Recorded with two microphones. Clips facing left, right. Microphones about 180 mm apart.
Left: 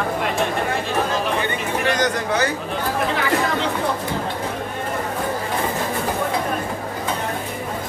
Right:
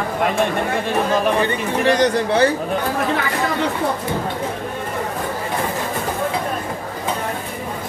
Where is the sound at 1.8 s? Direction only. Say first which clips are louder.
Right 6 dB; 30° right (ahead or behind).